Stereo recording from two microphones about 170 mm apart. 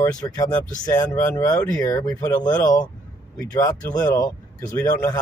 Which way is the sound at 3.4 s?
20° left (ahead or behind).